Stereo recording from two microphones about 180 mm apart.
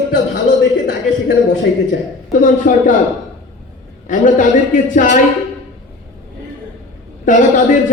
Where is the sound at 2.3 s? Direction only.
45° left (ahead or behind).